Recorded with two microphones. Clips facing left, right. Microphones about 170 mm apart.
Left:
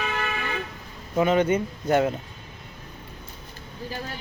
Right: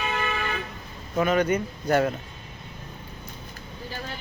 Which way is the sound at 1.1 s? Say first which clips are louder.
Left 2 dB; 25° left (ahead or behind).